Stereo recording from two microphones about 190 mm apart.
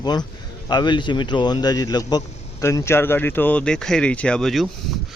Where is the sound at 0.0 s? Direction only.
20° left (ahead or behind); by 4.7 s centre (ahead or behind).